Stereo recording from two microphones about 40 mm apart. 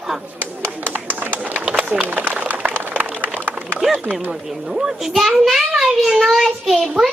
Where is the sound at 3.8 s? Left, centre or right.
Centre.